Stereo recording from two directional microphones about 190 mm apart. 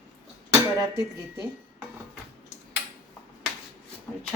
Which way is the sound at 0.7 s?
20° right (ahead or behind).